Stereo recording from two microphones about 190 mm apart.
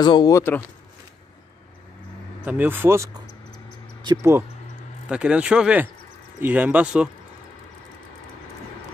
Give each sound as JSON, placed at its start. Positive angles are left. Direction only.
{"t": 0.0, "sound": "speech", "side_deg": 20}
{"t": 2.4, "sound": "speech", "side_deg": -10}